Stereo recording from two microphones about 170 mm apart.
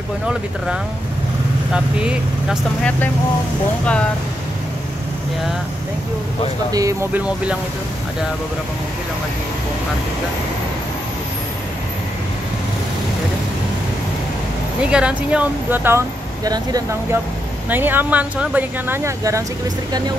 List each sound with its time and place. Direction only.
1.7 s speech: 5° right (ahead or behind)
3.8 s speech: 5° left (ahead or behind)
6.7 s speech: 20° right (ahead or behind)
14.8 s speech: 5° right (ahead or behind); by 17.2 s 20° right (ahead or behind)
17.6 s speech: 10° right (ahead or behind)